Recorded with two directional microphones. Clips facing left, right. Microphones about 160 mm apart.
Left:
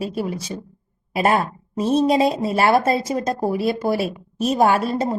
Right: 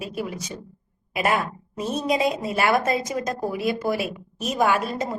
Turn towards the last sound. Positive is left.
turn(degrees=30)  # may be behind; listen again after turning